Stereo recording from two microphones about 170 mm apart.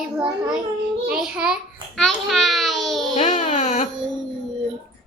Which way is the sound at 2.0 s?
Centre (ahead or behind).